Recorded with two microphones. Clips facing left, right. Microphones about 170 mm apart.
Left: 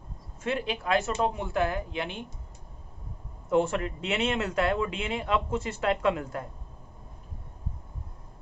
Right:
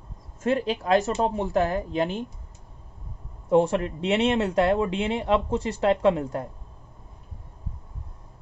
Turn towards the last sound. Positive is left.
turn(degrees=-30)  # may be behind; listen again after turning